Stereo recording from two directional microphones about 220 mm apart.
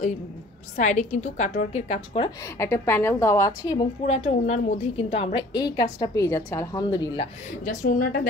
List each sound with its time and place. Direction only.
0.7 s a woman's voice: 35° left (ahead or behind)
2.4 s a woman's voice: 10° left (ahead or behind)
4.0 s a woman's voice: 30° left (ahead or behind)
7.6 s a woman's voice: 40° left (ahead or behind)